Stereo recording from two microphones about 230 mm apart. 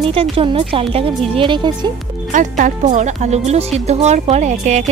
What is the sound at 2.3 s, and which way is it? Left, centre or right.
A woman's voice, right.